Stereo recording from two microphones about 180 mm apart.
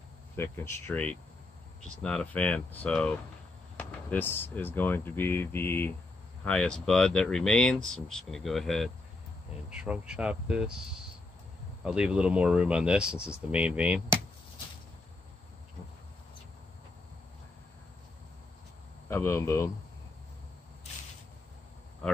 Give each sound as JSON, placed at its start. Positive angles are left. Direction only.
{"t": 0.4, "sound": "speech", "side_deg": 15}
{"t": 11.8, "sound": "speech", "side_deg": -5}
{"t": 19.0, "sound": "speech", "side_deg": 15}